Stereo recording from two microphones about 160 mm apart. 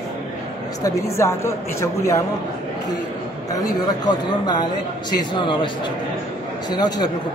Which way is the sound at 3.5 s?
25° left (ahead or behind).